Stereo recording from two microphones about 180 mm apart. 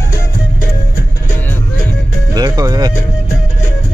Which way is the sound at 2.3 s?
20° right (ahead or behind).